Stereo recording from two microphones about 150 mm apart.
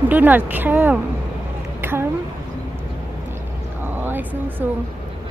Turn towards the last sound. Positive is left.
turn(degrees=-10)  # may be behind; listen again after turning